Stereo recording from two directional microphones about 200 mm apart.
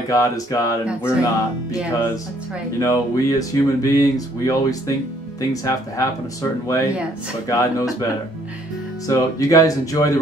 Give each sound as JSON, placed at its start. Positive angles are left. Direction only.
{"t": 0.1, "sound": "speech", "side_deg": 15}
{"t": 2.8, "sound": "speech", "side_deg": 15}
{"t": 7.4, "sound": "speech", "side_deg": 15}
{"t": 9.0, "sound": "speech", "side_deg": 15}